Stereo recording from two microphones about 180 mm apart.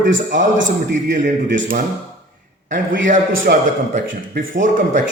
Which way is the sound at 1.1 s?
45° right (ahead or behind).